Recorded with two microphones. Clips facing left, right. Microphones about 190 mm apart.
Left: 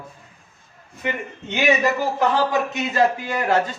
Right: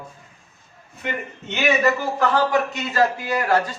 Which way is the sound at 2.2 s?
20° left (ahead or behind).